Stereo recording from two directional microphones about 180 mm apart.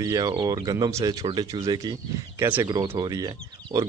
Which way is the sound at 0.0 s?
20° right (ahead or behind).